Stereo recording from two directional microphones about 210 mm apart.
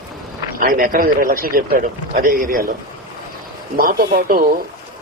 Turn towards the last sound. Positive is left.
turn(degrees=-45)  # may be behind; listen again after turning